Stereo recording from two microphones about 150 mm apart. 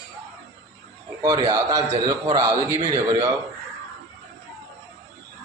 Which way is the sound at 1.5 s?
20° right (ahead or behind).